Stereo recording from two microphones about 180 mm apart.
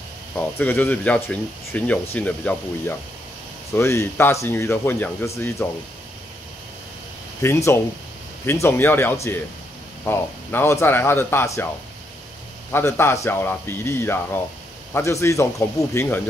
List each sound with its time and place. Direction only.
0.4 s speech: 10° left (ahead or behind)
7.4 s speech: 15° left (ahead or behind)
12.7 s speech: 15° left (ahead or behind)